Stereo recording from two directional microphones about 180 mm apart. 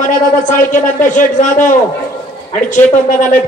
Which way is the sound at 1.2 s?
45° left (ahead or behind).